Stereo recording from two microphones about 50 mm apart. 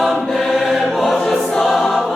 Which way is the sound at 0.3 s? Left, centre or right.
Centre.